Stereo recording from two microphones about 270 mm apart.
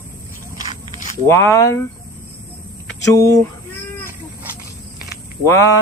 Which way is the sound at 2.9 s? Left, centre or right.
Centre.